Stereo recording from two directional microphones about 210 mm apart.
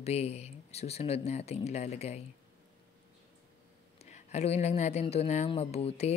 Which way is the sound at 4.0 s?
30° left (ahead or behind).